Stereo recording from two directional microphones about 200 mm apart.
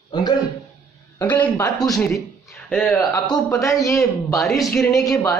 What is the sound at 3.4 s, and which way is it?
Speech, 15° left (ahead or behind).